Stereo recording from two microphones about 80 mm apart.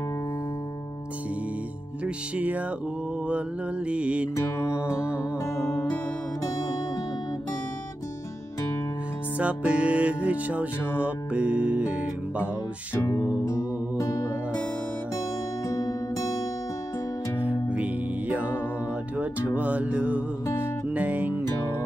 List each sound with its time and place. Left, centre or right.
2.0 s music: centre
4.6 s music: left
9.4 s music: centre
13.1 s music: left
17.4 s music: centre
19.1 s music: centre